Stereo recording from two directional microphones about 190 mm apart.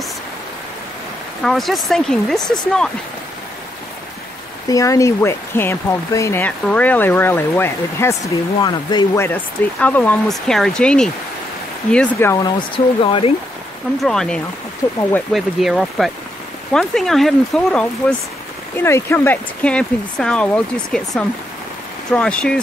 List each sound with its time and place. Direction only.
1.4 s speech: centre (ahead or behind)
4.6 s speech: 15° left (ahead or behind)
12.4 s speech: 25° left (ahead or behind)
14.0 s speech: 5° left (ahead or behind)
15.0 s speech: 15° left (ahead or behind)
15.3 s speech: centre (ahead or behind)